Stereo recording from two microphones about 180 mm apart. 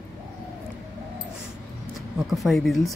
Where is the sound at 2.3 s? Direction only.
Centre (ahead or behind).